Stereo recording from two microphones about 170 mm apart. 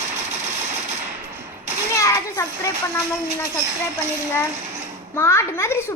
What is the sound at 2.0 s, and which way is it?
A child's voice, 15° left (ahead or behind).